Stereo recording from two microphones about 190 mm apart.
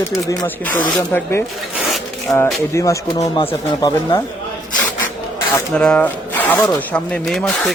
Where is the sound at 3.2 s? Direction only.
30° left (ahead or behind).